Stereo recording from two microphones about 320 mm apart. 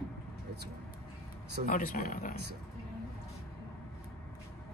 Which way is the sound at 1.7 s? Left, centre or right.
Left.